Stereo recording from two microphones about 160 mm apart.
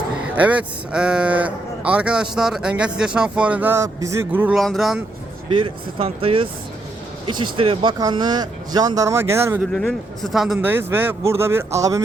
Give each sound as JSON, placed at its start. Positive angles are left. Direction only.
{"t": 0.3, "sound": "a man's voice", "side_deg": -10}
{"t": 4.5, "sound": "speech", "side_deg": 0}
{"t": 5.5, "sound": "speech", "side_deg": -35}
{"t": 9.7, "sound": "a man's voice", "side_deg": 0}